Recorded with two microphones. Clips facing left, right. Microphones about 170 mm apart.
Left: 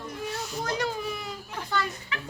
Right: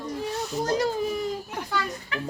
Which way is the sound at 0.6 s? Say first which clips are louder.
Right 6 dB; 40° right (ahead or behind).